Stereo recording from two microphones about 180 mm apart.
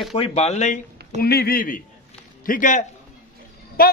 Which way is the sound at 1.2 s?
60° left (ahead or behind).